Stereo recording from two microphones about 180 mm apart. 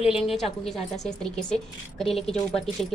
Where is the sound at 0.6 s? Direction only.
Centre (ahead or behind).